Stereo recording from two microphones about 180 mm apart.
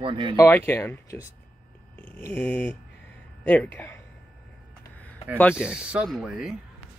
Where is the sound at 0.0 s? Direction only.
25° right (ahead or behind).